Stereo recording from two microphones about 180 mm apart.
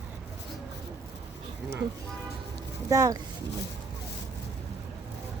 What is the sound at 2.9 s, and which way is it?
Speech, 20° right (ahead or behind).